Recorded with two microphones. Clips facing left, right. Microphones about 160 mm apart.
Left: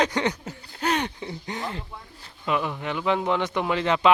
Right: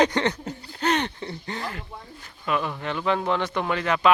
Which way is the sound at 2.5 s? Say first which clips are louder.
Even; 15° left (ahead or behind).